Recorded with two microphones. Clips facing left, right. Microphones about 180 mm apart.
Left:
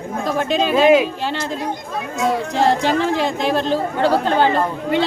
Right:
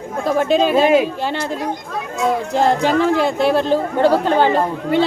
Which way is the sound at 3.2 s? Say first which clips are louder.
Right 3 dB; 10° right (ahead or behind).